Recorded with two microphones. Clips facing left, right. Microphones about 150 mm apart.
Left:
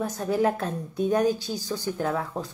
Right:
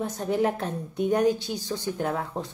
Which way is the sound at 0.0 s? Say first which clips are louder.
Left 1 dB; 25° right (ahead or behind).